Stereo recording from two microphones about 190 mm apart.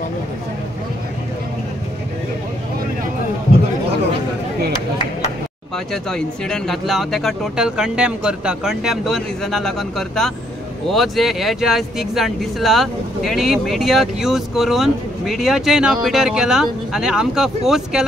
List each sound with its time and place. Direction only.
6.0 s speech: 5° left (ahead or behind)